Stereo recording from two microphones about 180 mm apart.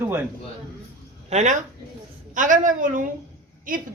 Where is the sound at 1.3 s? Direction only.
40° right (ahead or behind).